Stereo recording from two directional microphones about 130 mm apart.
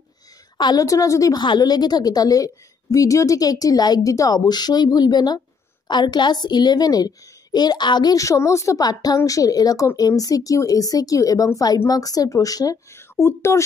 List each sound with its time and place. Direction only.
0.6 s a woman's voice: 30° left (ahead or behind)